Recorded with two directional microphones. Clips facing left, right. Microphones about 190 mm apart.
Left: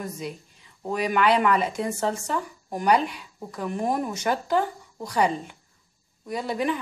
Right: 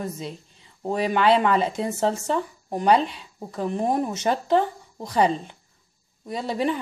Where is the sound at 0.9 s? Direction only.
30° right (ahead or behind).